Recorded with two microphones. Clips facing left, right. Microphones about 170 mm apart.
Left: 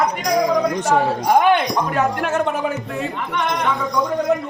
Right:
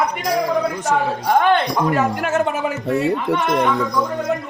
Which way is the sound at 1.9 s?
5° right (ahead or behind).